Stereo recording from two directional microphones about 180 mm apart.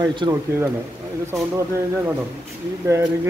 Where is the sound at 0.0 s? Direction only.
20° right (ahead or behind).